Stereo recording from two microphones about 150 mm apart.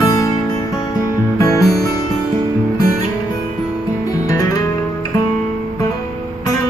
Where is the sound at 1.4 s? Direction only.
25° left (ahead or behind).